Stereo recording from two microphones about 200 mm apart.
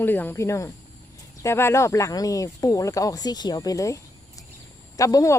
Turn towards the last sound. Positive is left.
turn(degrees=15)  # may be behind; listen again after turning